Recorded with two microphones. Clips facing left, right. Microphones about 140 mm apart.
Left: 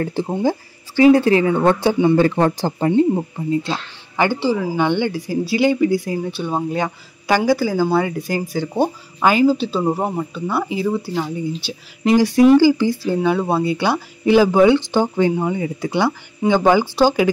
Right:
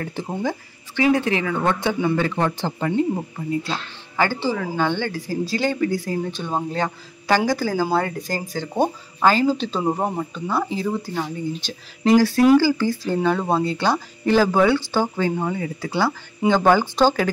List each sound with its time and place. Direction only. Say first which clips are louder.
0.0 s a woman's voice: left 6 dB; 30° left (ahead or behind)
2.9 s speech: left 7 dB; 20° left (ahead or behind)